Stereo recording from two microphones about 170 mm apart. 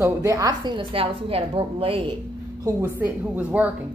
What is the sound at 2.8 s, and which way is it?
Speech, 10° right (ahead or behind).